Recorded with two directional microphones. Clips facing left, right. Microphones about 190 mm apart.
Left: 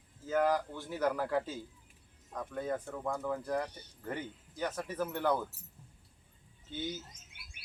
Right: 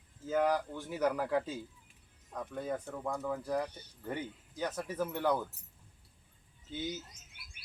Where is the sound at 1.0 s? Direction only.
Centre (ahead or behind).